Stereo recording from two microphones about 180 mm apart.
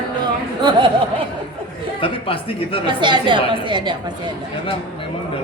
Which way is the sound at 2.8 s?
25° right (ahead or behind).